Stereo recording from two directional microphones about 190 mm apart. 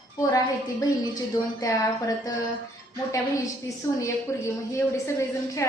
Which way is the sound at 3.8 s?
15° left (ahead or behind).